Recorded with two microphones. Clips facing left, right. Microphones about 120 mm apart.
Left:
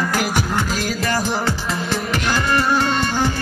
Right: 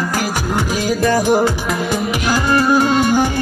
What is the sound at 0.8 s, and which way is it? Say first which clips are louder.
Music: right 6 dB; 15° right (ahead or behind).